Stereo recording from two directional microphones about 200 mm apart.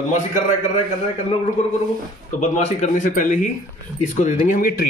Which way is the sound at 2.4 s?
35° left (ahead or behind).